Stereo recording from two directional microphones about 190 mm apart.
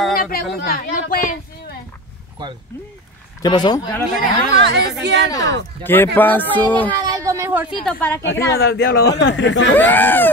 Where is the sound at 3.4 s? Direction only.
25° left (ahead or behind).